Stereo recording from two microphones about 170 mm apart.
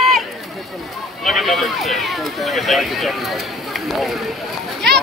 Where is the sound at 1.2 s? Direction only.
Centre (ahead or behind).